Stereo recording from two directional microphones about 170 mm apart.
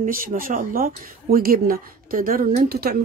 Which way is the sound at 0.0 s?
55° right (ahead or behind).